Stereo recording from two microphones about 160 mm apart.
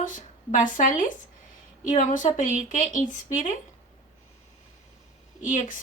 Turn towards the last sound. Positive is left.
turn(degrees=55)  # may be behind; listen again after turning